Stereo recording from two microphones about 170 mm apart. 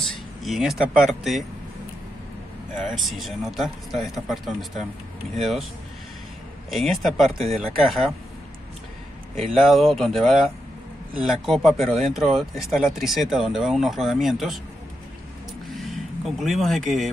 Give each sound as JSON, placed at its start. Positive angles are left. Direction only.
{"t": 0.0, "sound": "speech", "side_deg": 0}
{"t": 2.8, "sound": "speech", "side_deg": 0}
{"t": 6.7, "sound": "speech", "side_deg": 0}
{"t": 9.4, "sound": "speech", "side_deg": 0}
{"t": 15.7, "sound": "vehicle", "side_deg": 0}